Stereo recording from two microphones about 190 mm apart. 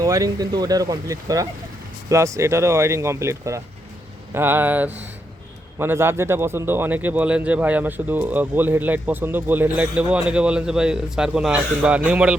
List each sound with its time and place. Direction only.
0.0 s a man's voice: 20° right (ahead or behind)